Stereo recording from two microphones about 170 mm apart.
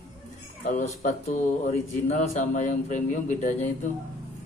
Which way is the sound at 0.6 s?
50° left (ahead or behind).